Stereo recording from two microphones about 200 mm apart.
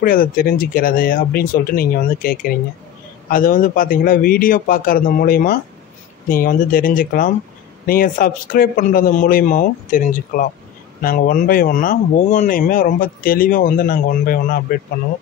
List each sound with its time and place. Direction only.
0.0 s speech: 45° left (ahead or behind)